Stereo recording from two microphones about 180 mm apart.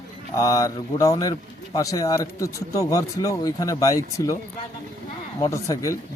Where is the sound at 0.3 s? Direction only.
20° left (ahead or behind).